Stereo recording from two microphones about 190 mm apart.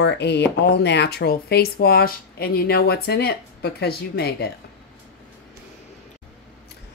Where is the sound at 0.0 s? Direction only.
65° left (ahead or behind).